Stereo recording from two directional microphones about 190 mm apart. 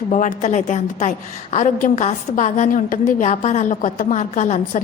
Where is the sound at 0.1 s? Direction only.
40° left (ahead or behind).